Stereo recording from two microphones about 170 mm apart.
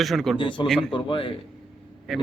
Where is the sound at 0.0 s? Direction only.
Centre (ahead or behind).